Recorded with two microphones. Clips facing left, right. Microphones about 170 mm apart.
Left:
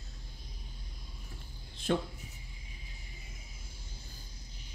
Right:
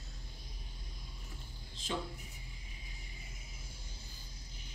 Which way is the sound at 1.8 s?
60° left (ahead or behind).